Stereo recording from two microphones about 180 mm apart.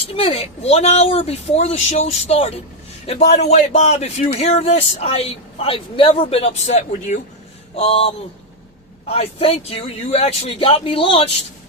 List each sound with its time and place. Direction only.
0.2 s speech: 35° left (ahead or behind)